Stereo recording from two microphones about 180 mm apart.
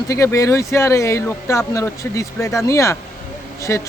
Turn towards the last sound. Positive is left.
turn(degrees=15)  # may be behind; listen again after turning